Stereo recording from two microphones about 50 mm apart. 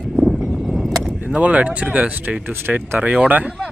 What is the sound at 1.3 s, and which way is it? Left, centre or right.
Speech, right.